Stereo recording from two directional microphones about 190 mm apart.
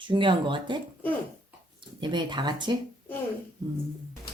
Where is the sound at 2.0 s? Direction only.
25° right (ahead or behind).